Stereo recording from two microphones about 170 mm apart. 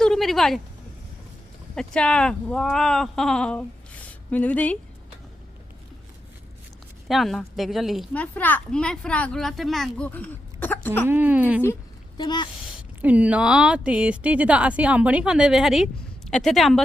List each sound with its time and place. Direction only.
0.0 s a sound: centre (ahead or behind)
1.7 s a child's voice: 5° left (ahead or behind)
7.1 s a child's voice: centre (ahead or behind)
11.1 s a woman's voice: 10° right (ahead or behind)
12.1 s speech: 25° left (ahead or behind)
13.0 s a woman's voice: 10° right (ahead or behind)